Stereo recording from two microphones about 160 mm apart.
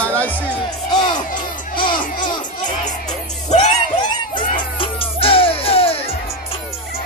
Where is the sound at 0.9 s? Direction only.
25° left (ahead or behind).